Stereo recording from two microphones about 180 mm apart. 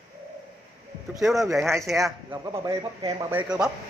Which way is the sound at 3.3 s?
5° right (ahead or behind).